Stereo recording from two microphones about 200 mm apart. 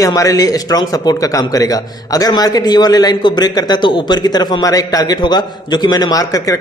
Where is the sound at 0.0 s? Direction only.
15° left (ahead or behind).